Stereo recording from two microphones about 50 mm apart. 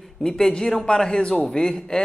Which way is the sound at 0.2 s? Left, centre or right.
Centre.